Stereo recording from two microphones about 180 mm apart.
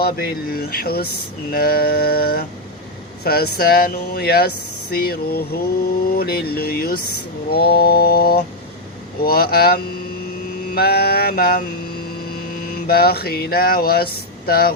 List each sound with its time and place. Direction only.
0.0 s speech: 60° left (ahead or behind)
12.7 s speech: 60° left (ahead or behind)